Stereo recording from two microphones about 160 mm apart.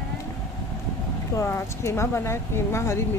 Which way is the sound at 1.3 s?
15° left (ahead or behind).